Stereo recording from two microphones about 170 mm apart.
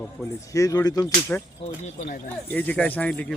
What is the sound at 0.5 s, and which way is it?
Speech, 20° left (ahead or behind).